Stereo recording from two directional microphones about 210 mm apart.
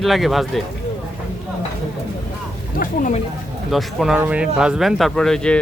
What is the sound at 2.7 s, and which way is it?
Speech, 35° left (ahead or behind).